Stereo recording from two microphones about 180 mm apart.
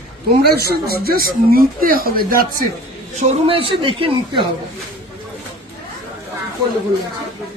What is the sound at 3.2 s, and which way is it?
A woman's voice, 30° right (ahead or behind).